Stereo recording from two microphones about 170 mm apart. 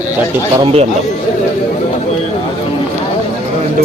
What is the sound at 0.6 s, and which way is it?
Speech, 35° right (ahead or behind).